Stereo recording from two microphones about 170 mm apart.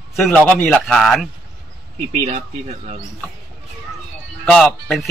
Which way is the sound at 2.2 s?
45° right (ahead or behind).